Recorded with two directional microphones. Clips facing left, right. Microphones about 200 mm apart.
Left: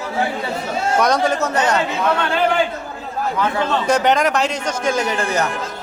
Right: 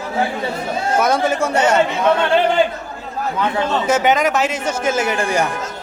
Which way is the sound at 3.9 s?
5° right (ahead or behind).